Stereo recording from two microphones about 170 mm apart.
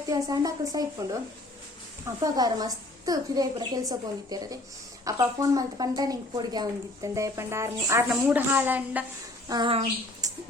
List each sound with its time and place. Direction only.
0.1 s speech: 20° right (ahead or behind)
2.2 s a woman's voice: 20° right (ahead or behind)
9.5 s speech: 30° right (ahead or behind)